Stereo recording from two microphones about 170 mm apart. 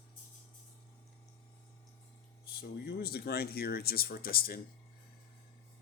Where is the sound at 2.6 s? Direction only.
65° left (ahead or behind).